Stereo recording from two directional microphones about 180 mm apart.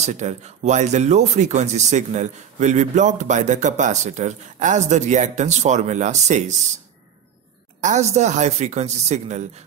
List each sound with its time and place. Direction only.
0.0 s speech: 40° right (ahead or behind)
7.8 s speech: 40° right (ahead or behind)